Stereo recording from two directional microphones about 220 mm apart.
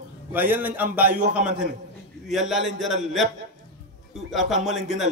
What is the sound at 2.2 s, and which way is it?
Speech, centre (ahead or behind).